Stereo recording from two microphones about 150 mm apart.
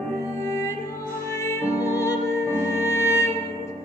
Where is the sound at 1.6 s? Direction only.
15° right (ahead or behind).